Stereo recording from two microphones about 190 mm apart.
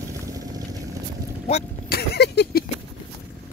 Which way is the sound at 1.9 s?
60° left (ahead or behind).